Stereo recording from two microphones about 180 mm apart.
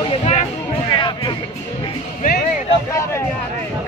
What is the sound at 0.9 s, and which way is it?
Music, 25° left (ahead or behind).